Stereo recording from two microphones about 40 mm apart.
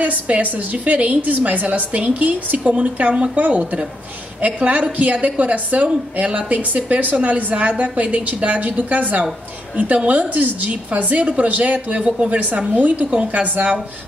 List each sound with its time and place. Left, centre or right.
0.0 s a woman's voice: right
2.6 s a woman's voice: right
3.3 s a woman's voice: right